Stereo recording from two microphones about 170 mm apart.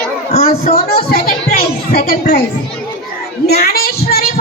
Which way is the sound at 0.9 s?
60° left (ahead or behind).